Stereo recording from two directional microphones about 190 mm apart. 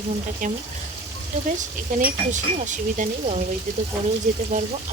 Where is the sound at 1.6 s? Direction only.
40° right (ahead or behind).